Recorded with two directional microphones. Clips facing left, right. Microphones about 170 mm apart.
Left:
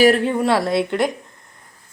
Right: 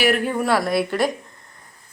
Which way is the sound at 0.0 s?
30° left (ahead or behind).